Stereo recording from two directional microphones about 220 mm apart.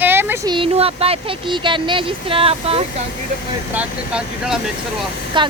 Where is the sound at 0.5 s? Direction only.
25° right (ahead or behind).